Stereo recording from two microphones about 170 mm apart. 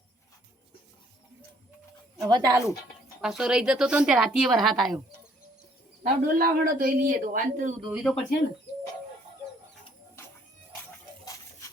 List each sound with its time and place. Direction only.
2.2 s a woman's voice: 20° right (ahead or behind)
3.2 s a woman's voice: 5° right (ahead or behind)
6.0 s a man's voice: 55° right (ahead or behind)
8.1 s a woman's voice: 5° left (ahead or behind)